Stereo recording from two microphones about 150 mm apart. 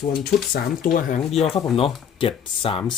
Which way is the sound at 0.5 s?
85° left.